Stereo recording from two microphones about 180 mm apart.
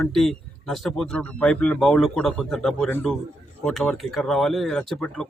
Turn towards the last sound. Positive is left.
turn(degrees=5)  # may be behind; listen again after turning